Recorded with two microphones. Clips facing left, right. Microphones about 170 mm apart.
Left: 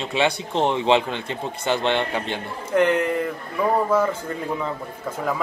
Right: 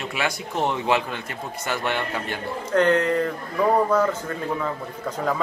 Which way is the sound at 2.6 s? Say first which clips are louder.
Even; 10° left (ahead or behind).